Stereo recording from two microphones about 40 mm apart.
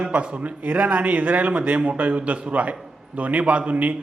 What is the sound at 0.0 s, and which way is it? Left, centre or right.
A man's voice, right.